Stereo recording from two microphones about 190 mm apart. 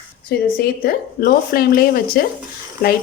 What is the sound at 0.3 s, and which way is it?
Speech, 55° left (ahead or behind).